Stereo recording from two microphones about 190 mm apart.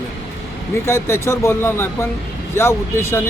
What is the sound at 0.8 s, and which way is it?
Speech, 15° left (ahead or behind).